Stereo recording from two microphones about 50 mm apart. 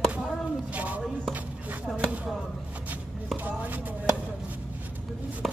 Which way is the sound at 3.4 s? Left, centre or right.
Right.